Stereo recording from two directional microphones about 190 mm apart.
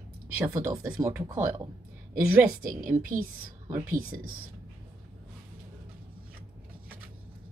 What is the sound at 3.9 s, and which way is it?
Speech, 45° right (ahead or behind).